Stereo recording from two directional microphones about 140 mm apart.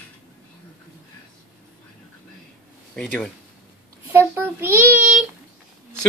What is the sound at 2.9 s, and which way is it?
Speech, 5° left (ahead or behind).